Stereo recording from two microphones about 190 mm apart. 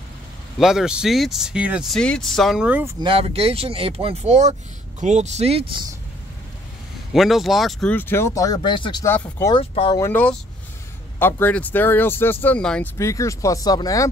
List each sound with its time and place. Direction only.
0.6 s speech: centre (ahead or behind)
3.0 s speech: 30° right (ahead or behind)
7.1 s speech: centre (ahead or behind); by 9.0 s 25° left (ahead or behind)
9.0 s speech: 10° left (ahead or behind)
9.5 s speech: 30° left (ahead or behind)
9.9 s speech: 10° left (ahead or behind)
12.9 s speech: 15° left (ahead or behind)